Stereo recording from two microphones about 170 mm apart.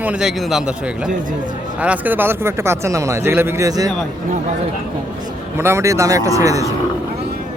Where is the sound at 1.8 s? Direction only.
10° right (ahead or behind).